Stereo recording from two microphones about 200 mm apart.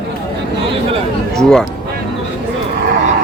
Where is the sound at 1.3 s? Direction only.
5° left (ahead or behind).